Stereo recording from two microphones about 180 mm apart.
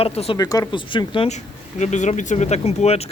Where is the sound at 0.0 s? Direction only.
35° left (ahead or behind).